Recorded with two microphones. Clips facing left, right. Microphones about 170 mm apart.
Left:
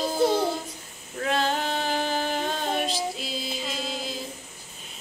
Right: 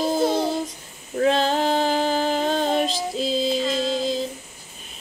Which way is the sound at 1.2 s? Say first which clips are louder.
Right 6 dB; 30° right (ahead or behind).